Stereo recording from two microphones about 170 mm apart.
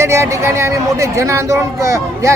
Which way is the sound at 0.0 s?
15° right (ahead or behind).